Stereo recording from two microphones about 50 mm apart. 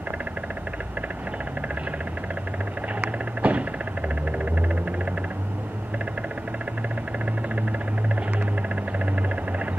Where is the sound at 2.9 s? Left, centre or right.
Right.